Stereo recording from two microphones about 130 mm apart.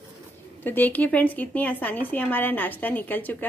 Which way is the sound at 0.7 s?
15° left (ahead or behind).